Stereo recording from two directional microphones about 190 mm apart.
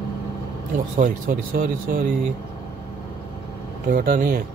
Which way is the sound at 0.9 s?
45° right (ahead or behind).